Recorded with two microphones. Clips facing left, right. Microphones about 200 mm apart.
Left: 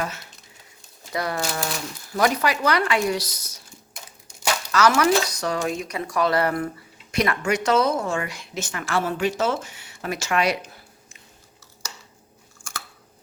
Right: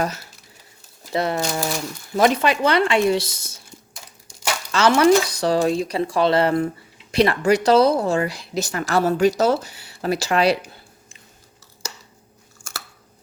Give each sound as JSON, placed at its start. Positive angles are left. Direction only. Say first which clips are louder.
{"t": 1.1, "sound": "speech", "louder": "right 4 dB", "side_deg": -25}
{"t": 4.7, "sound": "a woman's voice", "louder": "right 4 dB", "side_deg": -30}
{"t": 12.5, "sound": "chewing", "louder": "right 1 dB", "side_deg": -40}